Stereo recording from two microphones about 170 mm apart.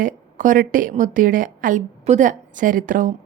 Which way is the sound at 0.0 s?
50° right (ahead or behind).